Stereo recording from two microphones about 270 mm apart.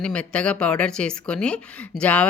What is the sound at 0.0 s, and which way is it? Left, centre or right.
A woman's voice, centre.